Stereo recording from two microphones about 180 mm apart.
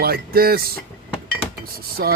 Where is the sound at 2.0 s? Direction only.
65° right (ahead or behind).